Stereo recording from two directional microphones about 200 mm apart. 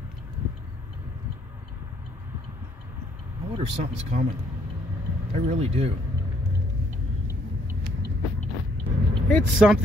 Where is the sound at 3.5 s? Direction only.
30° right (ahead or behind).